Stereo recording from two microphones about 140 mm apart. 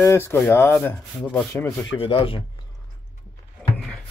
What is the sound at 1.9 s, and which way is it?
Speech, 40° left (ahead or behind).